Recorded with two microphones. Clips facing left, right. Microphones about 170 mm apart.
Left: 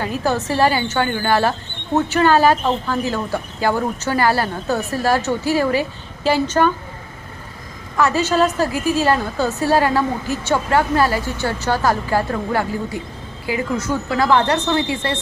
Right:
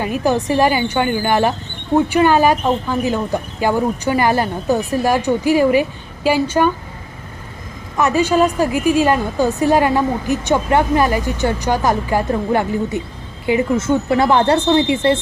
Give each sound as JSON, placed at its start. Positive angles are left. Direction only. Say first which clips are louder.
{"t": 0.0, "sound": "a woman's voice", "louder": "right 3 dB", "side_deg": -15}
{"t": 7.9, "sound": "a woman's voice", "louder": "right 2 dB", "side_deg": -15}